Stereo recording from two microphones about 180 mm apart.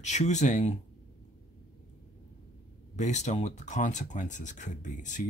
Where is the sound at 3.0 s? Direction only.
40° left (ahead or behind).